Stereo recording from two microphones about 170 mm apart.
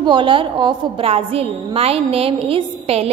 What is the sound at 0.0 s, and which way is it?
A woman's voice, 30° right (ahead or behind).